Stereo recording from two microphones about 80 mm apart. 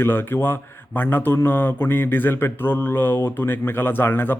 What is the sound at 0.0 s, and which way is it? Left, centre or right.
Speech, left.